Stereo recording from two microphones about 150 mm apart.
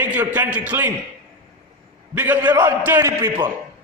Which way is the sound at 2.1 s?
10° right (ahead or behind).